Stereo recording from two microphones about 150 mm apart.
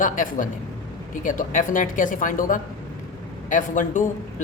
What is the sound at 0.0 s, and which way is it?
A man's voice, 60° left (ahead or behind).